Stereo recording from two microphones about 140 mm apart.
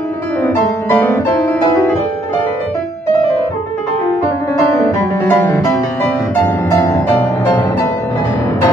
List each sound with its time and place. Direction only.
0.4 s music: 15° left (ahead or behind)
5.2 s music: 20° left (ahead or behind)